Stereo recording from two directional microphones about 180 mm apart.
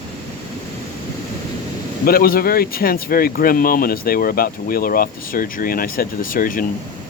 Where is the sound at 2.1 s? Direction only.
55° left (ahead or behind).